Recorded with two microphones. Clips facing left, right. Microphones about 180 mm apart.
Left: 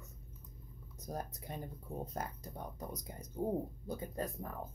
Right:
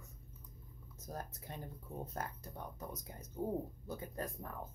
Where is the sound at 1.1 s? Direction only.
15° left (ahead or behind).